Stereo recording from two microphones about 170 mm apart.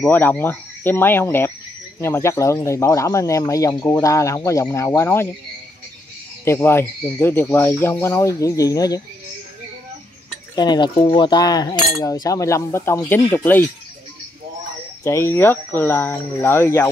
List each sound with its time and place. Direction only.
0.0 s speech: 10° left (ahead or behind)
6.4 s speech: 15° left (ahead or behind)
10.5 s cutlery: 25° left (ahead or behind)
15.0 s speech: 15° left (ahead or behind)